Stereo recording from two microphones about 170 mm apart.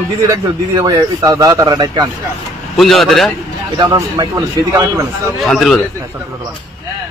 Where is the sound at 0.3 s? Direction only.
20° right (ahead or behind).